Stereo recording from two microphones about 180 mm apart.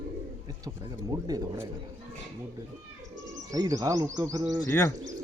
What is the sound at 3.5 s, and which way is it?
Speech, 20° right (ahead or behind).